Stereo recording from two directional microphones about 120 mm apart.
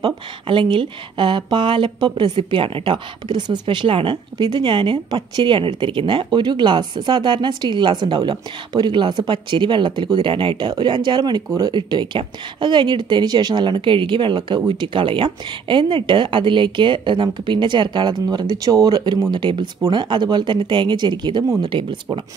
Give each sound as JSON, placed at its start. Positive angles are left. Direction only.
{"t": 0.0, "sound": "speech", "side_deg": -40}